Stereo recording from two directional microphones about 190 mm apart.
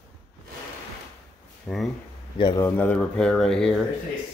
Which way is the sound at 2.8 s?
5° left (ahead or behind).